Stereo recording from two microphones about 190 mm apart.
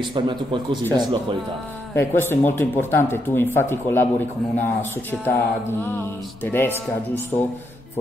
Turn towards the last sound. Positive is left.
turn(degrees=10)  # may be behind; listen again after turning